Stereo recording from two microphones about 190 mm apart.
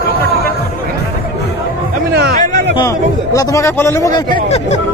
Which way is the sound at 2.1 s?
50° right (ahead or behind).